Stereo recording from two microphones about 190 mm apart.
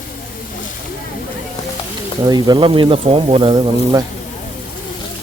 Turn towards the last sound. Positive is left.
turn(degrees=-25)  # may be behind; listen again after turning